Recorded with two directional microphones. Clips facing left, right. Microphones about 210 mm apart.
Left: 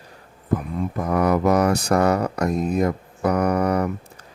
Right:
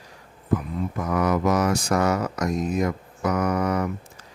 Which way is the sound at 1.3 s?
60° left (ahead or behind).